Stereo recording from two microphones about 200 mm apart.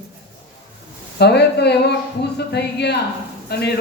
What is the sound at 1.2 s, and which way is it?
Speech, 55° left (ahead or behind).